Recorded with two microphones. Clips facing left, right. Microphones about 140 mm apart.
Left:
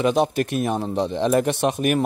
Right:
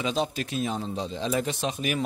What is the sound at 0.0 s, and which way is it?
A man's voice, 60° left (ahead or behind).